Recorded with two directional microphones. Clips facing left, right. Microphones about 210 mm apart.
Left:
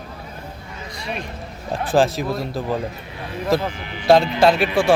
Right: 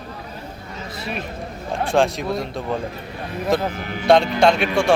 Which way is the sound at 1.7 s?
Centre (ahead or behind).